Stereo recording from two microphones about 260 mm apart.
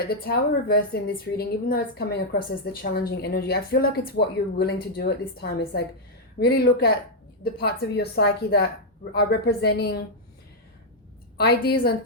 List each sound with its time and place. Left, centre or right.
0.0 s a woman's voice: left
11.3 s a woman's voice: left